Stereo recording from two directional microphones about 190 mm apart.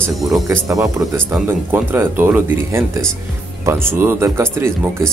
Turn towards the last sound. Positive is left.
turn(degrees=-15)  # may be behind; listen again after turning